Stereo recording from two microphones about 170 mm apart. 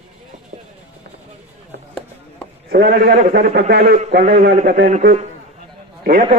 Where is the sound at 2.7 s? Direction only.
65° right (ahead or behind).